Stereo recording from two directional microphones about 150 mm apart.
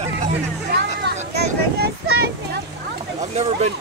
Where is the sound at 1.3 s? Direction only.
90° right.